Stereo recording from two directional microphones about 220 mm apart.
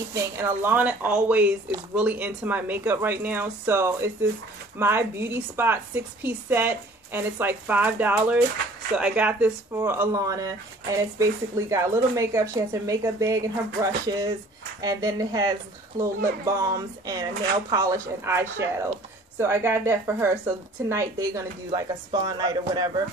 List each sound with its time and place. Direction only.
0.1 s speech: 10° right (ahead or behind)
16.5 s speech: 15° right (ahead or behind)